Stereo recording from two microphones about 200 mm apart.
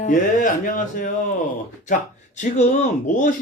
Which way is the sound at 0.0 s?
40° left (ahead or behind).